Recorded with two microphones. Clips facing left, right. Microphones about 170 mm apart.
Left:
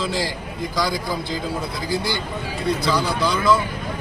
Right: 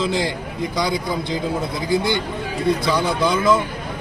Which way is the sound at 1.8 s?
20° right (ahead or behind).